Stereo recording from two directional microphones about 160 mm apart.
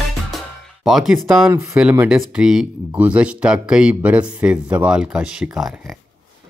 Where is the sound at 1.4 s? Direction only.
20° right (ahead or behind); by 6.0 s centre (ahead or behind).